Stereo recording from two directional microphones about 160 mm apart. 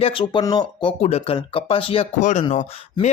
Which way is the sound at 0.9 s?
45° left (ahead or behind).